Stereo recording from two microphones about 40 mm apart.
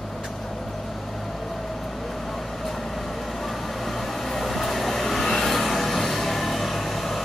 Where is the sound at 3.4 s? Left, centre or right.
Centre.